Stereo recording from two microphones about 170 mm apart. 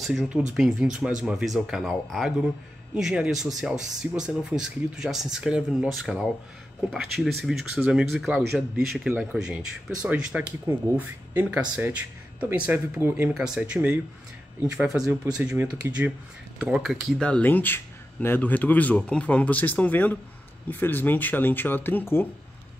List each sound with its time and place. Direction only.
0.0 s speech: 5° right (ahead or behind)
15.4 s speech: 15° right (ahead or behind)
16.5 s speech: 5° right (ahead or behind); by 22.3 s 10° left (ahead or behind)